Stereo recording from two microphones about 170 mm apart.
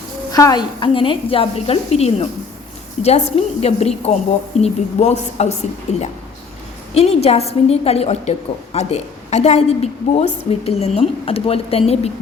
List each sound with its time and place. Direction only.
0.3 s a woman's voice: 20° left (ahead or behind)